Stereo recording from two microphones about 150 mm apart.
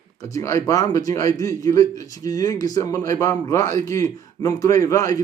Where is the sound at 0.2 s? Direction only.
20° left (ahead or behind).